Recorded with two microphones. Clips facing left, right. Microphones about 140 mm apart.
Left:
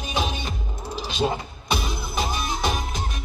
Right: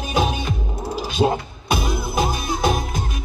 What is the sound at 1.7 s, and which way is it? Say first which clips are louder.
Music: right 5 dB; 50° right (ahead or behind).